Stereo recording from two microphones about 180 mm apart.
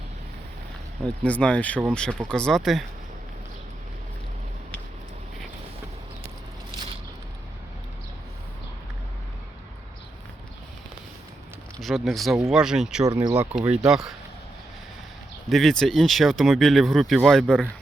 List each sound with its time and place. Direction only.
1.0 s speech: 5° left (ahead or behind)
12.0 s speech: centre (ahead or behind)
13.1 s speech: 20° right (ahead or behind)
13.3 s speech: 5° right (ahead or behind)
15.4 s speech: centre (ahead or behind)